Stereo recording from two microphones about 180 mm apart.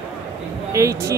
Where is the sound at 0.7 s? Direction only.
15° right (ahead or behind).